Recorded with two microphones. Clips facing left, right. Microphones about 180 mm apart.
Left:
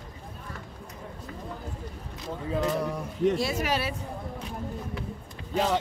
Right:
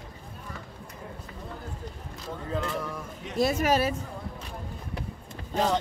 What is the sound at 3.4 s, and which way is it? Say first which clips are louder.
Speech: right 4 dB; 45° right (ahead or behind).